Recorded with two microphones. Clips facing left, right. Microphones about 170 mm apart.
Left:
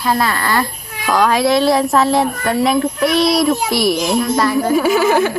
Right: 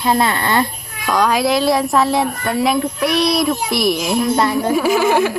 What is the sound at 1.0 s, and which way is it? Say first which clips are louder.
Speech: left 2 dB; centre (ahead or behind).